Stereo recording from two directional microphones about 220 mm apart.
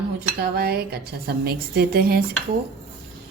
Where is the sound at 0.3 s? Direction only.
45° right (ahead or behind).